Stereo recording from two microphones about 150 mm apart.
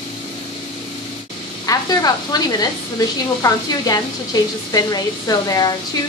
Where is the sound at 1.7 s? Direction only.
25° left (ahead or behind).